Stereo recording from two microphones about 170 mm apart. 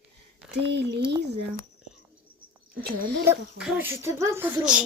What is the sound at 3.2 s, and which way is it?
A child's voice, 10° right (ahead or behind).